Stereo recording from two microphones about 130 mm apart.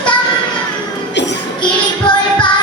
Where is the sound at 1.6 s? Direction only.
40° left (ahead or behind).